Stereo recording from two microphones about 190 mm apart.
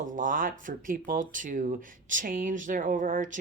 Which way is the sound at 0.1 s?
45° right (ahead or behind).